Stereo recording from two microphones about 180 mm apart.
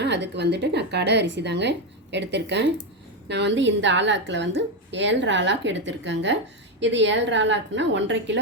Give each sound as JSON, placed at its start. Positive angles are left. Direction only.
{"t": 0.0, "sound": "a woman's voice", "side_deg": -75}